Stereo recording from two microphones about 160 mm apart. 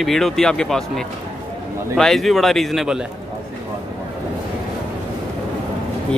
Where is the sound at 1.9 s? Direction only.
Centre (ahead or behind).